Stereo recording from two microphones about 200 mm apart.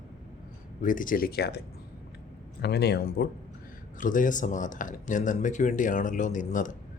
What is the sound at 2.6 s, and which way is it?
Speech, 55° left (ahead or behind).